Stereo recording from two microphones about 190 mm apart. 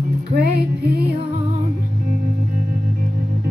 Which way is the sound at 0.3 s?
55° right (ahead or behind).